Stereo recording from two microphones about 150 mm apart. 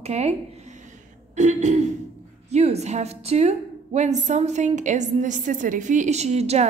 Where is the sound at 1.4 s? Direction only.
50° right (ahead or behind).